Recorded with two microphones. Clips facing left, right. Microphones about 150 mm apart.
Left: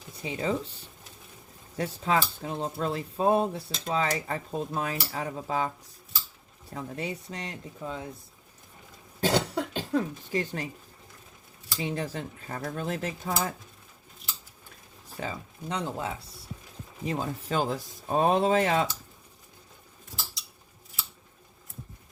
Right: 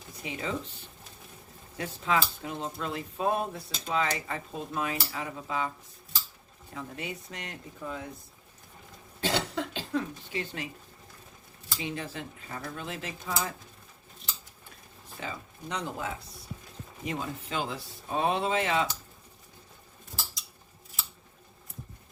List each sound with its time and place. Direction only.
0.2 s speech: 35° left (ahead or behind)
9.2 s cough: 45° left (ahead or behind)
11.8 s speech: 35° left (ahead or behind)
15.1 s speech: 35° left (ahead or behind)
17.1 s speech: 40° left (ahead or behind)